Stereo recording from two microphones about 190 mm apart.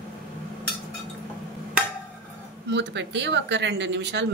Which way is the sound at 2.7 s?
70° right (ahead or behind).